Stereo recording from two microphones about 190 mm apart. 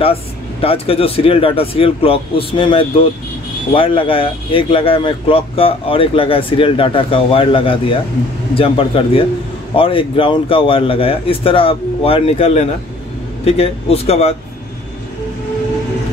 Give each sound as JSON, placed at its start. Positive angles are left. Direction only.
{"t": 0.0, "sound": "speech", "side_deg": 30}